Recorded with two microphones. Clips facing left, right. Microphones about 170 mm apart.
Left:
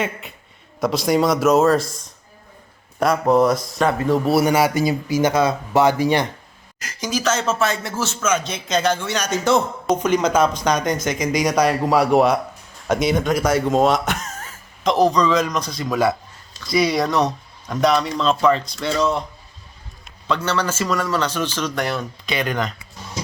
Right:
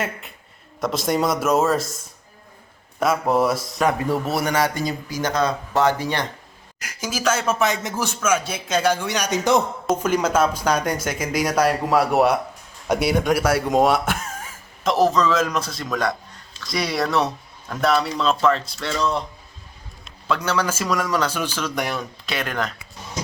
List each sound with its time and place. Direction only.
0.0 s speech: centre (ahead or behind)
3.0 s speech: 5° right (ahead or behind)
3.8 s a man's voice: 15° right (ahead or behind)
4.3 s speech: 5° left (ahead or behind)
6.7 s a man's voice: 10° right (ahead or behind)
20.2 s a man's voice: 5° right (ahead or behind)